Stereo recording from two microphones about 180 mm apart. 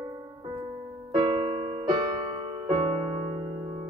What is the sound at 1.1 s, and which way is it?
Music, 30° right (ahead or behind).